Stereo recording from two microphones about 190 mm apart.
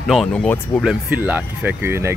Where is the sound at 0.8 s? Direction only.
5° right (ahead or behind).